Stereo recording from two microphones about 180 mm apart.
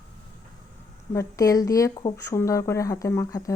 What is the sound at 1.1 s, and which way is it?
A woman's voice, 15° left (ahead or behind).